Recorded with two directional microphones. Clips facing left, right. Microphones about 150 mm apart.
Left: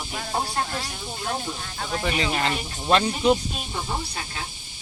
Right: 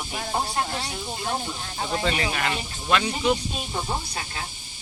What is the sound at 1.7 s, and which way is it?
Speech, 20° right (ahead or behind).